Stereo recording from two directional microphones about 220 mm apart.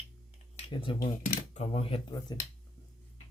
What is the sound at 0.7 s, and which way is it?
Speech, 20° left (ahead or behind).